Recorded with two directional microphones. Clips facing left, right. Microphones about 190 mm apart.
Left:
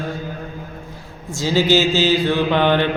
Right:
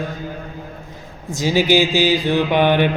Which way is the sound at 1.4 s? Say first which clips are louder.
Even; 15° right (ahead or behind).